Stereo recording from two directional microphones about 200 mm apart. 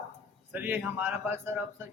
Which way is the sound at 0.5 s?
10° right (ahead or behind).